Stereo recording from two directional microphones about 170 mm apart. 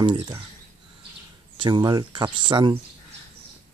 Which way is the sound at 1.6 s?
30° right (ahead or behind).